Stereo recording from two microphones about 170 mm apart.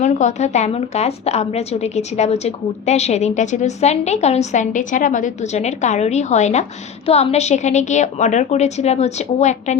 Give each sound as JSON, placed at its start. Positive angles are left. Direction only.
{"t": 0.0, "sound": "a woman's voice", "side_deg": 45}